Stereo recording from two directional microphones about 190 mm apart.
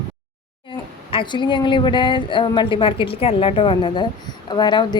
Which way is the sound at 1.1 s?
25° left (ahead or behind).